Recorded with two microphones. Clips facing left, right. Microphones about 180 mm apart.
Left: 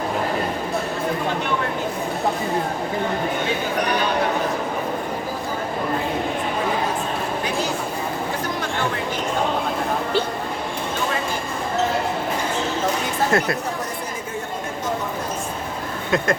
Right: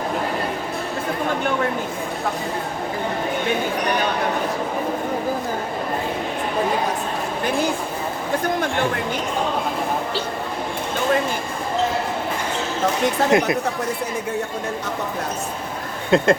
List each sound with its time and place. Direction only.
13.3 s speech: 15° right (ahead or behind)
16.1 s speech: 30° right (ahead or behind)